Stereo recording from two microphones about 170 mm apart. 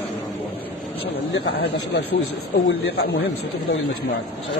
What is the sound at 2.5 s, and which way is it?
Speech, 85° left.